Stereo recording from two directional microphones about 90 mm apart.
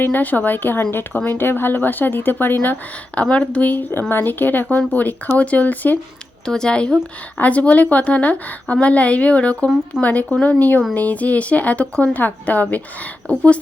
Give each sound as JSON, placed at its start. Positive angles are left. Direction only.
{"t": 0.0, "sound": "a woman's voice", "side_deg": 20}
{"t": 6.4, "sound": "a woman's voice", "side_deg": 10}